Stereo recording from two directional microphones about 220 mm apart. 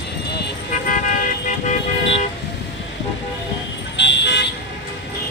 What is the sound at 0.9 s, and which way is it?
Toot, 35° left (ahead or behind).